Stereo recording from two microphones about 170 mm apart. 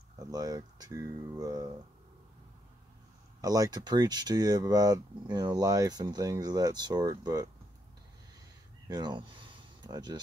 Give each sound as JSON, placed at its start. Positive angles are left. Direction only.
{"t": 0.2, "sound": "speech", "side_deg": -20}
{"t": 3.3, "sound": "speech", "side_deg": -20}
{"t": 8.8, "sound": "a sound", "side_deg": -25}